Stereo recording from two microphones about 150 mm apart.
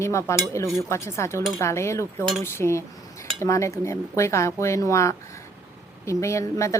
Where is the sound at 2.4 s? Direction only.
15° left (ahead or behind).